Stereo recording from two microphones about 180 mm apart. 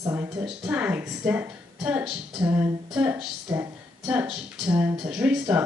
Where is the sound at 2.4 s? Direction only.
15° right (ahead or behind).